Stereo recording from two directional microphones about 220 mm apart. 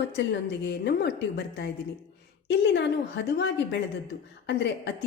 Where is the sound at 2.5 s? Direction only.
55° left (ahead or behind).